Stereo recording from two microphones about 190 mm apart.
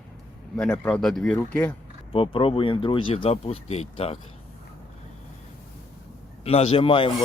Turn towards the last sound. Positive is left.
turn(degrees=25)  # may be behind; listen again after turning